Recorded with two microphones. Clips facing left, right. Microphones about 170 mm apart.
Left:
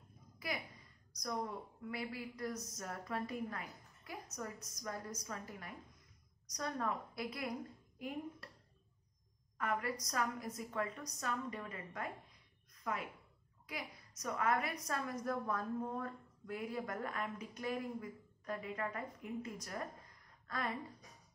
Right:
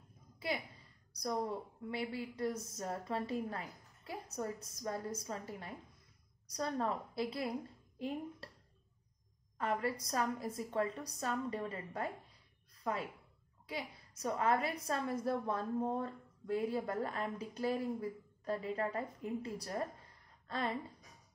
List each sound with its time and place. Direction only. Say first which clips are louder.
0.4 s a woman's voice: right 4 dB; 30° right (ahead or behind)
8.4 s a sound: right 3 dB; 30° right (ahead or behind)
9.6 s a woman's voice: right 3 dB; 30° right (ahead or behind)